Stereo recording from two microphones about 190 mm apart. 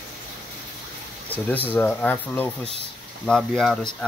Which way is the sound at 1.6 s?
10° left (ahead or behind).